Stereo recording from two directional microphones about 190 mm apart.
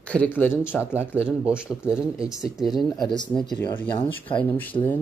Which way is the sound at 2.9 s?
20° left (ahead or behind).